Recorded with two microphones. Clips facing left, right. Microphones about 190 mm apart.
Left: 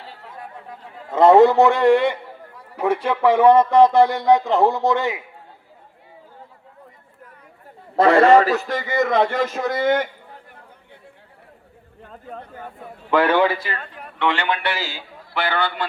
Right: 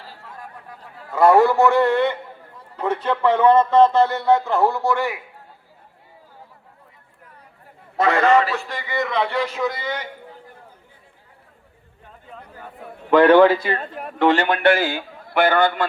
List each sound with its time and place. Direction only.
1.1 s a man's voice: 25° left (ahead or behind)
7.9 s a man's voice: 30° left (ahead or behind); by 10.1 s 50° left (ahead or behind)
12.3 s speech: 55° left (ahead or behind)
13.9 s a man's voice: 45° right (ahead or behind)